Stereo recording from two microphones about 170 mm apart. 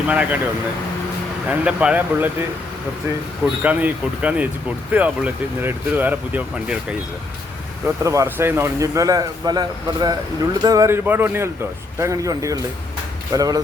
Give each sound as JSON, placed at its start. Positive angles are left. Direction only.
{"t": 0.1, "sound": "speech", "side_deg": -10}
{"t": 1.5, "sound": "speech", "side_deg": -5}
{"t": 3.6, "sound": "a man's voice", "side_deg": -10}